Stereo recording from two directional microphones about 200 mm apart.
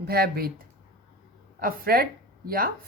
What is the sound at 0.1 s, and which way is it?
Speech, 50° right (ahead or behind).